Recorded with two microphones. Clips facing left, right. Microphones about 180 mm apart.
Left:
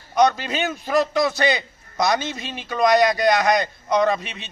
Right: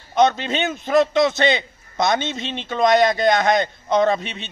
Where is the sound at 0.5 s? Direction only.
25° right (ahead or behind).